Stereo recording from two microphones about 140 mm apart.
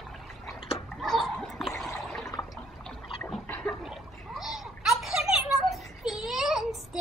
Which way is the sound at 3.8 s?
5° right (ahead or behind).